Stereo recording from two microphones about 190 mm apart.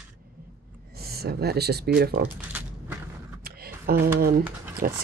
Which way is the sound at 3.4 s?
55° right (ahead or behind).